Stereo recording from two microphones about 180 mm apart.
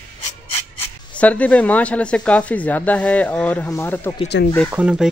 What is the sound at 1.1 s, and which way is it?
Speech, 5° left (ahead or behind).